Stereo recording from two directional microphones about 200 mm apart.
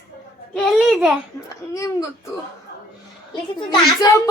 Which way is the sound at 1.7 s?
15° left (ahead or behind).